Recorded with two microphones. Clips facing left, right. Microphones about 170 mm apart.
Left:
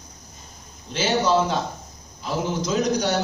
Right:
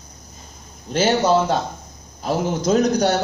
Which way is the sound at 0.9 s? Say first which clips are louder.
Right 4 dB; 50° right (ahead or behind).